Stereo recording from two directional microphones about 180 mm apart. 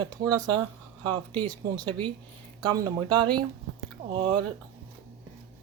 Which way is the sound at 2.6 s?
25° right (ahead or behind).